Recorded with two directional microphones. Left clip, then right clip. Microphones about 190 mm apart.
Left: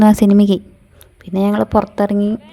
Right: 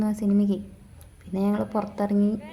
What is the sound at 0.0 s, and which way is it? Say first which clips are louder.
Speech: left 14 dB; 50° left (ahead or behind).